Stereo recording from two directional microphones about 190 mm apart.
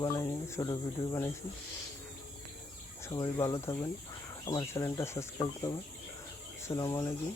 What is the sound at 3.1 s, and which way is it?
Speech, 20° left (ahead or behind).